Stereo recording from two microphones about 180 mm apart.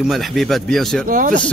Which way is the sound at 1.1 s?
45° right (ahead or behind).